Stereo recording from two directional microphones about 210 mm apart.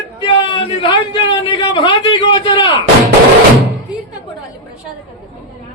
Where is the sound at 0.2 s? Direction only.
20° left (ahead or behind).